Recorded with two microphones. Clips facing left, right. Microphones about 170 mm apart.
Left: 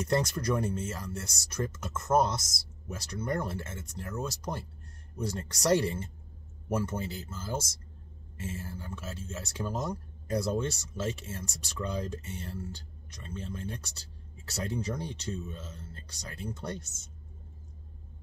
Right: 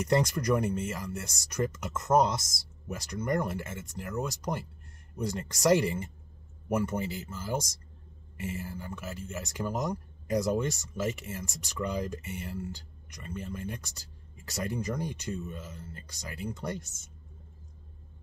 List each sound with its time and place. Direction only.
0.0 s speech: 15° right (ahead or behind)